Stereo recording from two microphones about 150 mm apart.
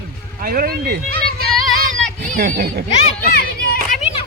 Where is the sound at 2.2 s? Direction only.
55° right (ahead or behind); by 2.8 s 75° right (ahead or behind).